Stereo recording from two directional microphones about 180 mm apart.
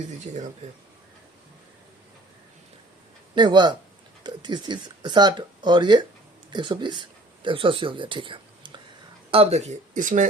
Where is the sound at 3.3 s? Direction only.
25° right (ahead or behind).